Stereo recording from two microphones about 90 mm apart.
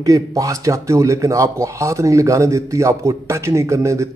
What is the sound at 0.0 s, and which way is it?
A man's voice, 40° right (ahead or behind).